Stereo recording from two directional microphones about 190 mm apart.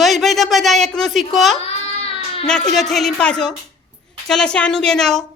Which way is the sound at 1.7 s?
30° left (ahead or behind).